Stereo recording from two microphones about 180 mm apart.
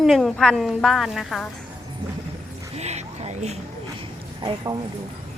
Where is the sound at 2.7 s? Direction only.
35° right (ahead or behind).